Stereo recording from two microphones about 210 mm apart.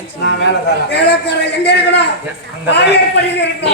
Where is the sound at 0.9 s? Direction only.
50° left (ahead or behind).